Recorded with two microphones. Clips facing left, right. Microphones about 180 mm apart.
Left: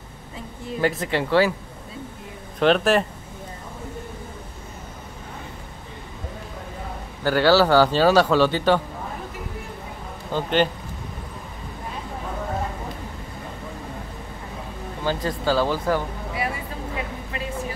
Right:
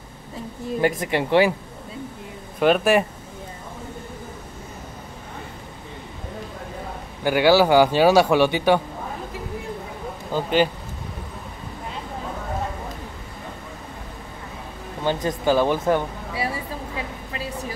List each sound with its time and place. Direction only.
0.7 s a man's voice: 15° right (ahead or behind)
2.6 s a man's voice: 10° right (ahead or behind)
7.2 s a man's voice: 15° right (ahead or behind)
10.3 s a man's voice: 5° right (ahead or behind)
15.0 s speech: 20° right (ahead or behind)